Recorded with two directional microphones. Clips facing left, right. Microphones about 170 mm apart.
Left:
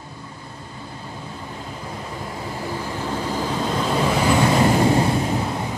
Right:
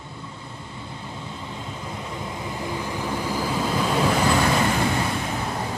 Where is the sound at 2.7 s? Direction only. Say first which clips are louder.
Left 1 dB; 15° right (ahead or behind).